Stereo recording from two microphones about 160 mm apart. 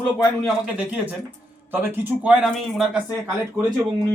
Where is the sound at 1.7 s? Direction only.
15° right (ahead or behind).